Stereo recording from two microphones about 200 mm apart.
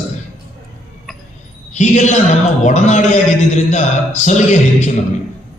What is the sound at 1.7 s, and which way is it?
A man's voice, 35° left (ahead or behind).